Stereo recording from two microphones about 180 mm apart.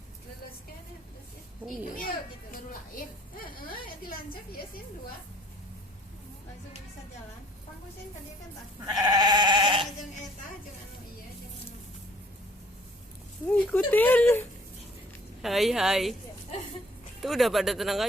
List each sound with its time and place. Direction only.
3.4 s a woman's voice: 55° left (ahead or behind)
8.9 s goat: 20° right (ahead or behind)
13.5 s speech: 10° left (ahead or behind)
17.2 s speech: centre (ahead or behind)